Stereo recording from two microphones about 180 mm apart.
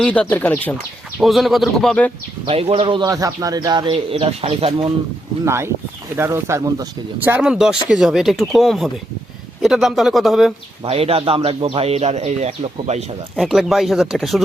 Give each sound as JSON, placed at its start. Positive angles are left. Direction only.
{"t": 0.0, "sound": "speech", "side_deg": 5}
{"t": 2.5, "sound": "speech", "side_deg": -35}
{"t": 5.5, "sound": "speech", "side_deg": -15}
{"t": 7.3, "sound": "speech", "side_deg": -5}
{"t": 10.8, "sound": "speech", "side_deg": -35}
{"t": 13.3, "sound": "speech", "side_deg": 0}